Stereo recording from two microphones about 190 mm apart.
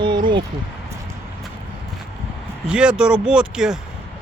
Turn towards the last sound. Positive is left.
turn(degrees=-5)  # may be behind; listen again after turning